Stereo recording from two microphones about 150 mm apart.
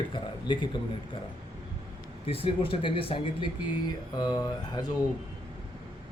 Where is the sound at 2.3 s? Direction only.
40° left (ahead or behind).